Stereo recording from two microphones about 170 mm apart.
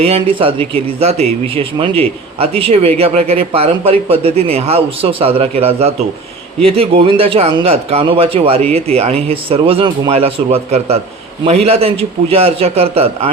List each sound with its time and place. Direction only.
0.0 s a man's voice: 35° right (ahead or behind)